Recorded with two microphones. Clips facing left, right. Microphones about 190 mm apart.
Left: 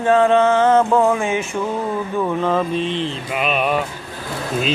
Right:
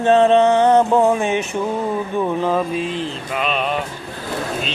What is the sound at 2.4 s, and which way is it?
Mantra, 10° right (ahead or behind).